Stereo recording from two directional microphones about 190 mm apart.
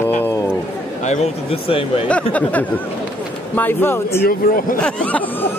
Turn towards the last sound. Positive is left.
turn(degrees=10)  # may be behind; listen again after turning